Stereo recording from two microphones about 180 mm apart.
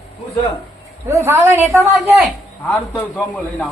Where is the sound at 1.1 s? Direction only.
15° right (ahead or behind).